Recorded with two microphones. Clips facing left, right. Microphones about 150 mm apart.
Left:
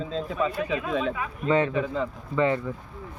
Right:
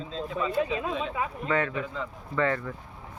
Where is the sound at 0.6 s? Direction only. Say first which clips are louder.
Left 3 dB; 25° right (ahead or behind).